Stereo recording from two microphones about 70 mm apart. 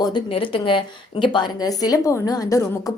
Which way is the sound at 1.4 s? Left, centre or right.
Left.